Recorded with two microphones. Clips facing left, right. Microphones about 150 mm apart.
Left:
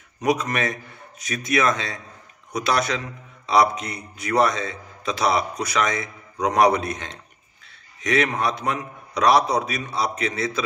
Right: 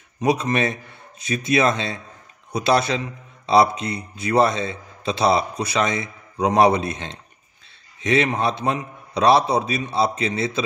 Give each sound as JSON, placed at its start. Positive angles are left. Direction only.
{"t": 0.2, "sound": "a man's voice", "side_deg": -25}